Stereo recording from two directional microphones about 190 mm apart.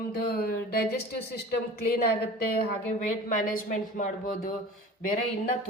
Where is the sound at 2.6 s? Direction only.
45° left (ahead or behind).